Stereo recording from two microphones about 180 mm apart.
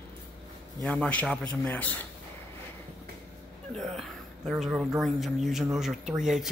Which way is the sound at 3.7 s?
Centre (ahead or behind).